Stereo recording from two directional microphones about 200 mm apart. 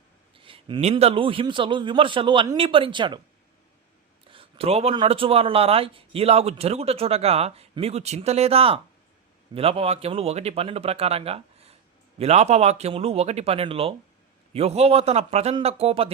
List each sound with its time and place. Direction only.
0.3 s speech: 25° right (ahead or behind)
4.3 s speech: 30° right (ahead or behind)